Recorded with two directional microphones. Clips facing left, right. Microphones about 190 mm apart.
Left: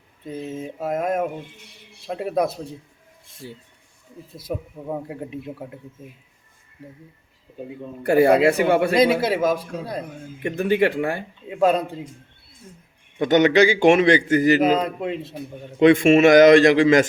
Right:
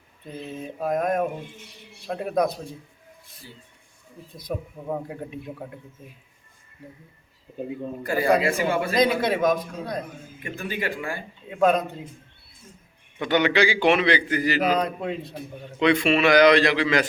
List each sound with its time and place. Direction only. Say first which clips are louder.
0.8 s speech: even; 5° left (ahead or behind)
3.4 s speech: left 9 dB; 65° left (ahead or behind)
4.4 s speech: left 2 dB; 5° left (ahead or behind)
8.0 s speech: left 7 dB; 65° left (ahead or behind)
9.2 s a man's voice: left 1 dB; 5° left (ahead or behind)
10.4 s speech: left 11 dB; 65° left (ahead or behind)
11.6 s a man's voice: left 1 dB; 30° left (ahead or behind)
13.1 s a man's voice: left 6 dB; 45° left (ahead or behind)
14.6 s speech: left 4 dB; 25° left (ahead or behind)
15.8 s a man's voice: left 7 dB; 50° left (ahead or behind)